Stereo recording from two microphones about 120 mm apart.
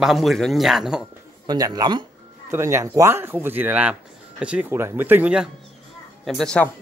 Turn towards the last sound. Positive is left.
turn(degrees=5)  # may be behind; listen again after turning